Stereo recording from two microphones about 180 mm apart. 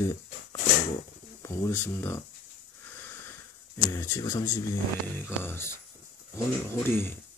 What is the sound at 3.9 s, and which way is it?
Speech, 15° left (ahead or behind).